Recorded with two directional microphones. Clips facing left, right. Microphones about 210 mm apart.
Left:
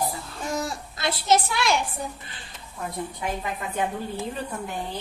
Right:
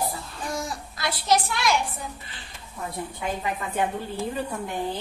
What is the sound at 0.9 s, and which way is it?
Speech, 25° left (ahead or behind).